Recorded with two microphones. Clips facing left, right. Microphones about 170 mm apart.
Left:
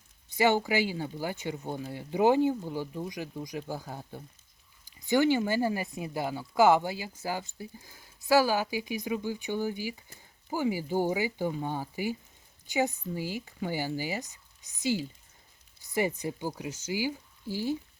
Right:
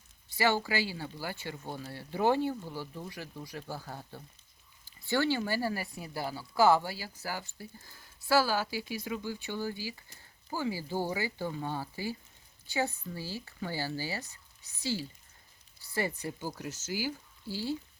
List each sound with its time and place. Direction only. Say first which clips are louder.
0.3 s speech: left 4 dB; 20° left (ahead or behind)